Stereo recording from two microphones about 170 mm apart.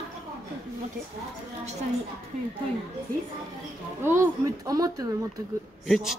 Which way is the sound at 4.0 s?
15° right (ahead or behind).